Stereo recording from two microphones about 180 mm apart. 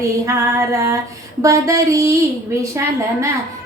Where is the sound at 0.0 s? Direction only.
15° right (ahead or behind).